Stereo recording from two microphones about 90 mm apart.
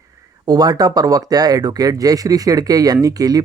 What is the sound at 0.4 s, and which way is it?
Speech, 50° right (ahead or behind).